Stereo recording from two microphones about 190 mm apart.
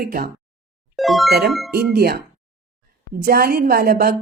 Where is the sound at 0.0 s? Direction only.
50° right (ahead or behind).